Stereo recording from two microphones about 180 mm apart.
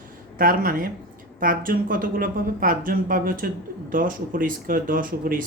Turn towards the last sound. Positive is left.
turn(degrees=-50)  # may be behind; listen again after turning